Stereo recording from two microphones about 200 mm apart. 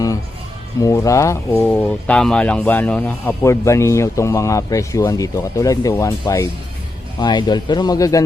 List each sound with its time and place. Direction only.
0.8 s speech: 15° left (ahead or behind)